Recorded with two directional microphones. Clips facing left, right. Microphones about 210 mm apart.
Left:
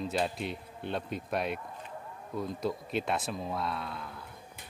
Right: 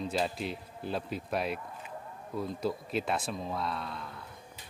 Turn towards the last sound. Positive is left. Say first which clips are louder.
# even
turn(degrees=0)  # may be behind; listen again after turning